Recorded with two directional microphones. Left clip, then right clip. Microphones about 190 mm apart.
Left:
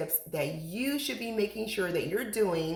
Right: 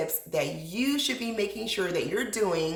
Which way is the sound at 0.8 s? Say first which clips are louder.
Right 5 dB; 10° right (ahead or behind).